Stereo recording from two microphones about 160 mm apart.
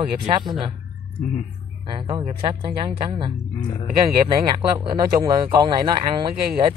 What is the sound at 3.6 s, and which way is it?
Speech, 25° left (ahead or behind).